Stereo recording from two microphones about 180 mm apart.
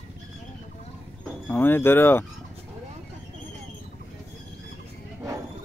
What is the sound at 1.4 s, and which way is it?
Speech, 10° left (ahead or behind).